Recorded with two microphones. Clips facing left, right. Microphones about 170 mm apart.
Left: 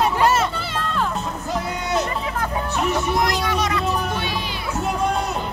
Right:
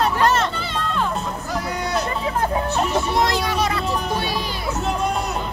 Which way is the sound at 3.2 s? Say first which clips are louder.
Right 1 dB; 30° right (ahead or behind).